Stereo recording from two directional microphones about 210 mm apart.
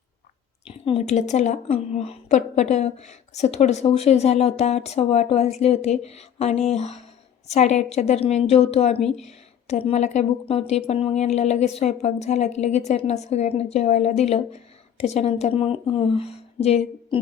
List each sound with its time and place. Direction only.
0.9 s a woman's voice: 30° left (ahead or behind)